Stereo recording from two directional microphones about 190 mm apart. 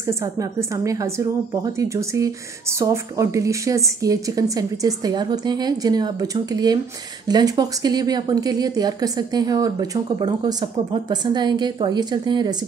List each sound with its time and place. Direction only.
0.0 s a woman's voice: 15° right (ahead or behind)